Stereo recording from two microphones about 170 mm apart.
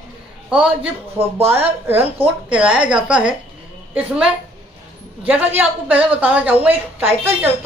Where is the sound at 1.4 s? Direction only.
10° right (ahead or behind).